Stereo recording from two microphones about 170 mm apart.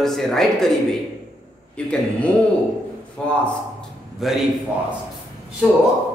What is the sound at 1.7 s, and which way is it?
Speech, 5° left (ahead or behind).